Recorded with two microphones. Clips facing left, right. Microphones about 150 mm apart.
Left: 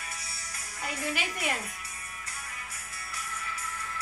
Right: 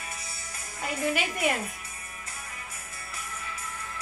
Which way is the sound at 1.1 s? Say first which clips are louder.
Right 6 dB; 50° right (ahead or behind).